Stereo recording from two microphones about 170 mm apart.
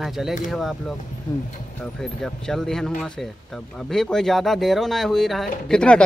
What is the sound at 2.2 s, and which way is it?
Speech, centre (ahead or behind).